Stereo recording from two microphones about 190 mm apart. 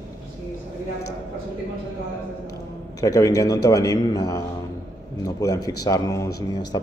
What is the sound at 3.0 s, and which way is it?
Speech, 20° left (ahead or behind).